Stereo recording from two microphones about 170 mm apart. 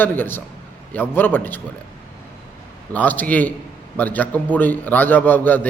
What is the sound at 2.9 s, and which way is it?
A man's voice, 10° left (ahead or behind).